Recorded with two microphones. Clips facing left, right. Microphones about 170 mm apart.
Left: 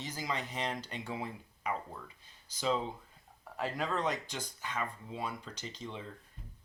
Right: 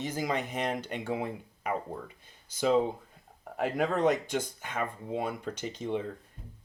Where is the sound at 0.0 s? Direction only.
50° right (ahead or behind).